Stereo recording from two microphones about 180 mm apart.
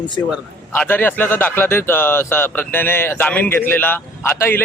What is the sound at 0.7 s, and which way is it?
Speech, 10° left (ahead or behind).